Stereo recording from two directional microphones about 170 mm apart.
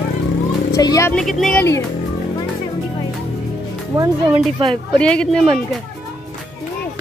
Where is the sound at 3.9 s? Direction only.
20° right (ahead or behind).